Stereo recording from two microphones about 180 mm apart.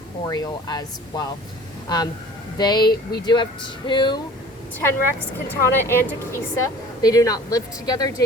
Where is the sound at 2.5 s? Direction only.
25° left (ahead or behind).